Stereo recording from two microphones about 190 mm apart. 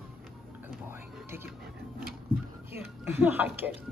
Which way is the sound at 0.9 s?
10° right (ahead or behind).